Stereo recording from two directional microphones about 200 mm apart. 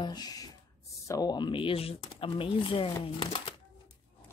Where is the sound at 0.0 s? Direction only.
20° left (ahead or behind).